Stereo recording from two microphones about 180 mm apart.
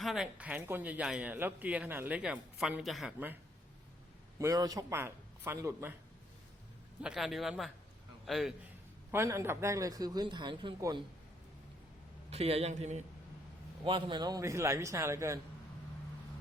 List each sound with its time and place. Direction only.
0.0 s a man's voice: centre (ahead or behind)
4.4 s a man's voice: 20° right (ahead or behind)
7.0 s a man's voice: 5° right (ahead or behind)
9.1 s speech: 15° right (ahead or behind)
12.3 s a man's voice: 35° right (ahead or behind)
13.8 s a man's voice: 25° right (ahead or behind)